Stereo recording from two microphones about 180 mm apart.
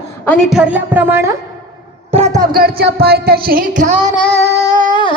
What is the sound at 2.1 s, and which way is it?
Music, 35° right (ahead or behind).